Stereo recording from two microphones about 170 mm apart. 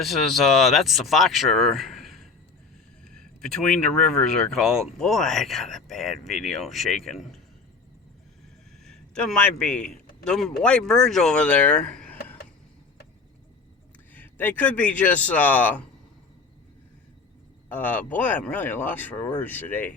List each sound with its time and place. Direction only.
0.0 s speech: centre (ahead or behind)
8.8 s a man's voice: 5° left (ahead or behind)
14.1 s speech: 10° left (ahead or behind)
17.7 s speech: 10° left (ahead or behind)